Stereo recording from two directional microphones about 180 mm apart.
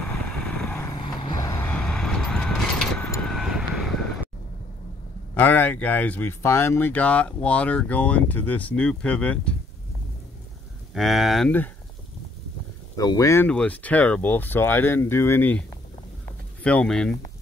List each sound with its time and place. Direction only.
0.9 s vehicle: 25° left (ahead or behind)
1.7 s vehicle: 5° left (ahead or behind)
5.3 s speech: 10° left (ahead or behind)
10.9 s speech: centre (ahead or behind)
12.9 s speech: 20° left (ahead or behind)
16.6 s speech: 5° left (ahead or behind)